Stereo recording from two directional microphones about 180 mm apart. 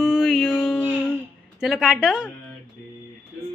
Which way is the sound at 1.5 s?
5° right (ahead or behind).